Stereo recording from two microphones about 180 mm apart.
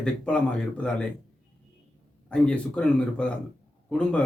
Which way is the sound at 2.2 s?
5° left (ahead or behind).